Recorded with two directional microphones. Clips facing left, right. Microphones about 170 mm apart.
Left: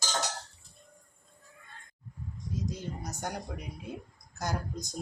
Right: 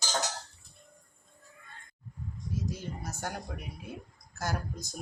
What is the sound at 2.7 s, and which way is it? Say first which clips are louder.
A woman's voice: left 1 dB; 20° left (ahead or behind).